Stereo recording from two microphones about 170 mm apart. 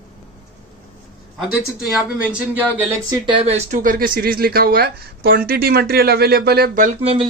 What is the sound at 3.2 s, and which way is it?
Speech, 35° right (ahead or behind).